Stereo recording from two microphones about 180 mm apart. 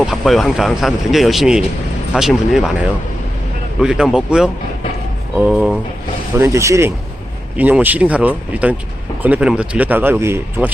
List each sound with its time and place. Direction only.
0.0 s speech: centre (ahead or behind)
3.8 s speech: 5° right (ahead or behind)
6.4 s speech: 15° right (ahead or behind)